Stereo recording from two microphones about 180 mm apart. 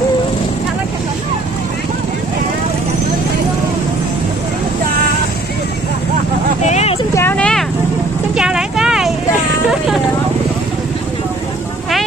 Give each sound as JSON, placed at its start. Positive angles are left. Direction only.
{"t": 6.6, "sound": "vehicle", "side_deg": 40}
{"t": 7.2, "sound": "a sound", "side_deg": 10}
{"t": 8.4, "sound": "vehicle", "side_deg": -5}